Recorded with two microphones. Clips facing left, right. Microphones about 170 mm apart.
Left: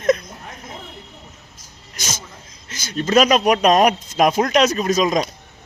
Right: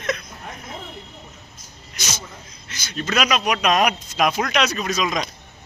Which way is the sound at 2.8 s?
45° left (ahead or behind).